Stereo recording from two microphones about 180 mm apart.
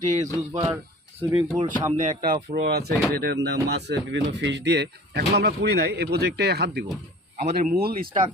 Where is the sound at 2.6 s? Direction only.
65° right (ahead or behind).